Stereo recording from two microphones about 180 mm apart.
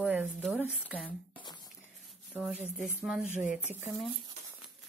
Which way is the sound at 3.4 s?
45° left (ahead or behind).